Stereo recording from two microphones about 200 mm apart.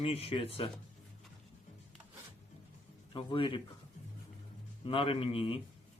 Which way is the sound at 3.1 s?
25° left (ahead or behind).